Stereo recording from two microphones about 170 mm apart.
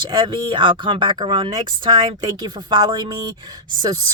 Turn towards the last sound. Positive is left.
turn(degrees=-20)  # may be behind; listen again after turning